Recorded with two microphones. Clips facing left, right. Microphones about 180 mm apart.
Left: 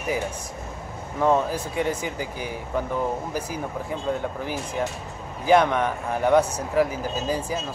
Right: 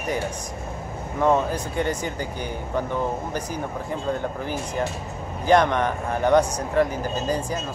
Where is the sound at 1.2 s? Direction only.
Centre (ahead or behind).